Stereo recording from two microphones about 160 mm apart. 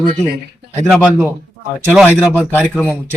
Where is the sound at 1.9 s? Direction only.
10° right (ahead or behind).